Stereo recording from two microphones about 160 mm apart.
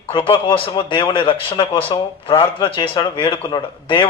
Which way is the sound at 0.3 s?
35° left (ahead or behind).